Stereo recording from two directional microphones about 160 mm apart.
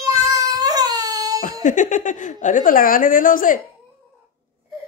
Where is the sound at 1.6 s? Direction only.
50° left (ahead or behind).